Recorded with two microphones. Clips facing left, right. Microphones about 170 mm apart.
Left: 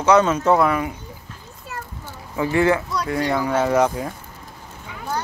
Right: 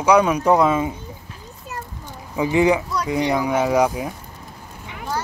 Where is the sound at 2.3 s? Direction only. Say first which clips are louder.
Right 1 dB; 15° right (ahead or behind).